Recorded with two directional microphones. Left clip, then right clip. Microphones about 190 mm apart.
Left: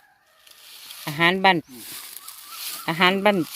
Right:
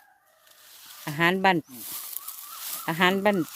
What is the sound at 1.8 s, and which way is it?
Snake, 35° right (ahead or behind).